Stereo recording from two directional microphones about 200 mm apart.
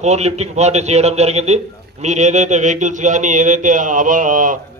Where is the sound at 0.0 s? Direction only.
35° right (ahead or behind).